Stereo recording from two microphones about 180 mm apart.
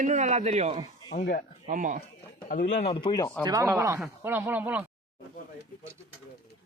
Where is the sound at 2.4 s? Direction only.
45° left (ahead or behind).